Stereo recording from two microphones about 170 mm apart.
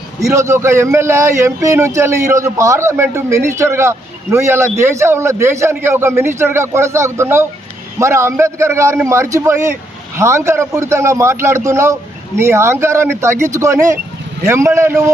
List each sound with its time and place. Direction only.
0.2 s a man's voice: 20° right (ahead or behind)